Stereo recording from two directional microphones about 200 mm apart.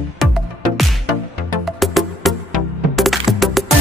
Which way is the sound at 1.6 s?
Centre (ahead or behind).